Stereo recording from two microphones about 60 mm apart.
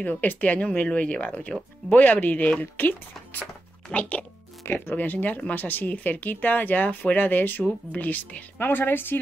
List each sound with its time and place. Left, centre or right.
0.0 s speech: left
4.6 s speech: left